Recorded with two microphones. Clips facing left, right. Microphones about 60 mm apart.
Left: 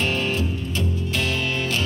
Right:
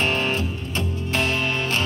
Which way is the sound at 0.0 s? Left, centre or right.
Right.